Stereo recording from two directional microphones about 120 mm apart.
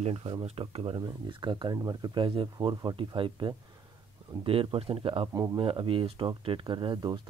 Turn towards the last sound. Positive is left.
turn(degrees=-40)  # may be behind; listen again after turning